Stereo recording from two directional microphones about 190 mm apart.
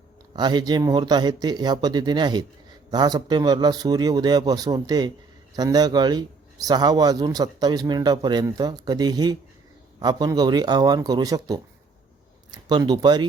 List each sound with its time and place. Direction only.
0.3 s speech: 20° right (ahead or behind)